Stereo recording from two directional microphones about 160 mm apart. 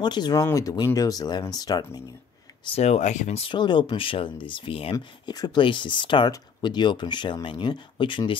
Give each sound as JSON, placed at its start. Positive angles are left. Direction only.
{"t": 0.0, "sound": "speech", "side_deg": 25}
{"t": 2.6, "sound": "speech", "side_deg": 40}
{"t": 4.9, "sound": "speech", "side_deg": 25}